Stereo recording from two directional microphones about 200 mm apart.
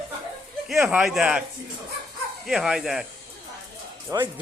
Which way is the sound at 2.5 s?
Centre (ahead or behind).